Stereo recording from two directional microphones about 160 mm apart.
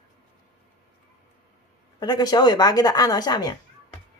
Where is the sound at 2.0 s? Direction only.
25° left (ahead or behind).